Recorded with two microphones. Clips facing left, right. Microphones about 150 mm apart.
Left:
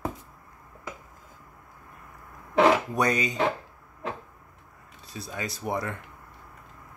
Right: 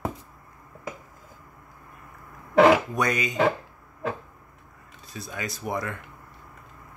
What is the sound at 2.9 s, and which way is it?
Speech, 35° left (ahead or behind).